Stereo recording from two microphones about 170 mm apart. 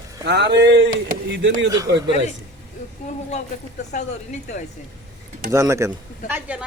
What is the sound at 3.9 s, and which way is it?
Speech, 45° left (ahead or behind).